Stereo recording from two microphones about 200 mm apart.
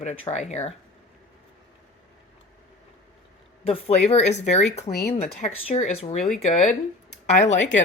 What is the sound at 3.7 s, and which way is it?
Speech, 30° left (ahead or behind).